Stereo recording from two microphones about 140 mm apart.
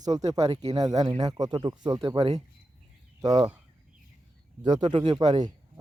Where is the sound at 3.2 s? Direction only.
25° right (ahead or behind).